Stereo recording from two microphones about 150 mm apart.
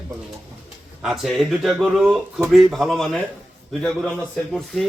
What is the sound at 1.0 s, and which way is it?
A man's voice, centre (ahead or behind).